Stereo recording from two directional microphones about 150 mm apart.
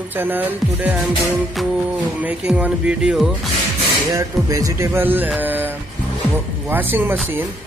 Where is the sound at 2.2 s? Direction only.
5° right (ahead or behind).